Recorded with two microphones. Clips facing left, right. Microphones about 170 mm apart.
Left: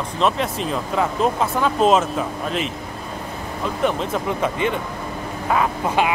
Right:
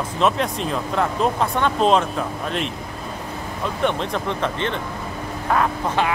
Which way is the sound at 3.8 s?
5° left (ahead or behind).